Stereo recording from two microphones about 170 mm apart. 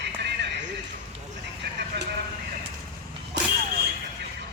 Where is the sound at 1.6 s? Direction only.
80° right.